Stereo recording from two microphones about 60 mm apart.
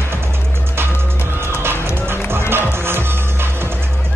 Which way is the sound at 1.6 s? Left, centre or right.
Right.